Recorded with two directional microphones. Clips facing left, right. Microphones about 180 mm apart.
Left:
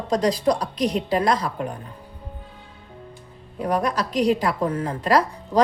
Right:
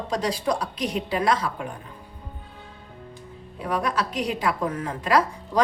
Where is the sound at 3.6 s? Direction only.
40° left (ahead or behind).